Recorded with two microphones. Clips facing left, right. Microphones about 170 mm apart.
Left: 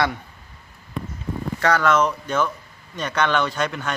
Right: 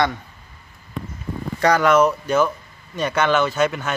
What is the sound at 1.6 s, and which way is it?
A man's voice, 15° right (ahead or behind).